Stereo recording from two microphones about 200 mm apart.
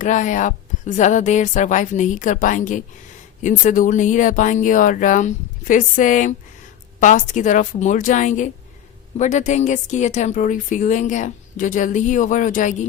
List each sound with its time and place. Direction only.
0.0 s speech: 40° left (ahead or behind)